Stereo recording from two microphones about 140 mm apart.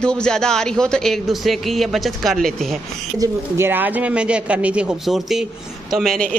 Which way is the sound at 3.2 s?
15° right (ahead or behind).